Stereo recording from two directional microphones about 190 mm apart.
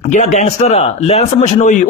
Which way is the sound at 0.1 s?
40° left (ahead or behind).